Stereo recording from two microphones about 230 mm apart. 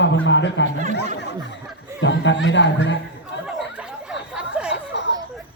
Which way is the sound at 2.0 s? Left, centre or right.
Left.